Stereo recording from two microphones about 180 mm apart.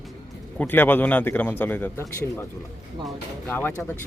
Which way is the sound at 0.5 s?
10° left (ahead or behind).